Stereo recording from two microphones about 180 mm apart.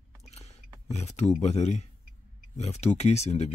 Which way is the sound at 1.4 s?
40° left (ahead or behind).